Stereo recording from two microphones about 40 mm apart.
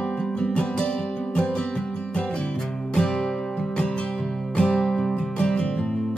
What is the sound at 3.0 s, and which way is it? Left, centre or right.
Music, centre.